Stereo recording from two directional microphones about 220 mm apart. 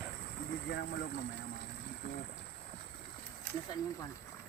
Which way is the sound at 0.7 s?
50° left (ahead or behind).